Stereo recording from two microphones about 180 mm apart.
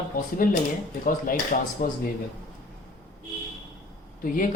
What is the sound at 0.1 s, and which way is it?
Speech, 50° left (ahead or behind).